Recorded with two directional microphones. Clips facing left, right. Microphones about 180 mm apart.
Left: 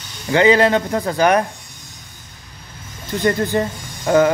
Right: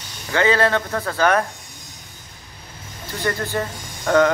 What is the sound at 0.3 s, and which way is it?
Speech, 15° left (ahead or behind).